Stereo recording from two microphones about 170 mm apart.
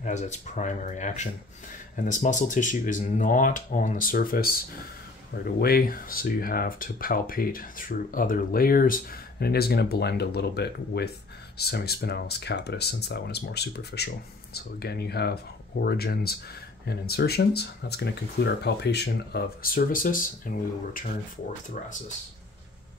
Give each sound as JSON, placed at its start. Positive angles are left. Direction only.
{"t": 0.0, "sound": "speech", "side_deg": 45}